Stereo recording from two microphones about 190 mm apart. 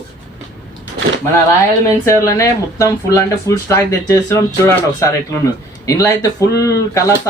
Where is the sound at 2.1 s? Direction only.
15° left (ahead or behind).